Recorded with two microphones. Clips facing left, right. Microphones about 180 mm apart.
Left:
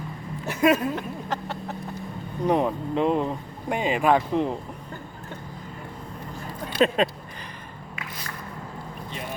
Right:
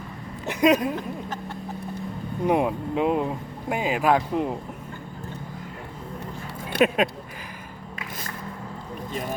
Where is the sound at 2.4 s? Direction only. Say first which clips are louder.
Even; 10° right (ahead or behind).